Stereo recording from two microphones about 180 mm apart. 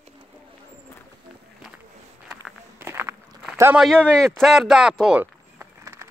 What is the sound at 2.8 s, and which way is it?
Walk, 15° right (ahead or behind).